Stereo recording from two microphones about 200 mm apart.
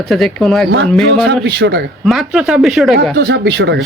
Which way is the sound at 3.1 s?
55° right (ahead or behind).